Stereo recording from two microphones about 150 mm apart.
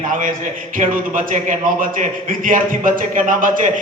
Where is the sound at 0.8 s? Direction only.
60° right (ahead or behind).